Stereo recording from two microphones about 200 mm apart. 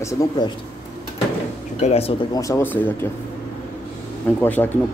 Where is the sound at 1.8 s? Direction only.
30° left (ahead or behind).